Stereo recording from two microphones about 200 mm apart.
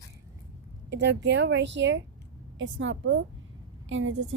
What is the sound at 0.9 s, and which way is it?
A woman's voice, 60° right (ahead or behind).